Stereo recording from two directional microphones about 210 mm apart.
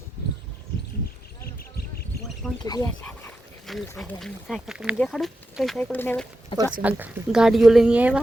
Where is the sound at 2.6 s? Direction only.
20° left (ahead or behind).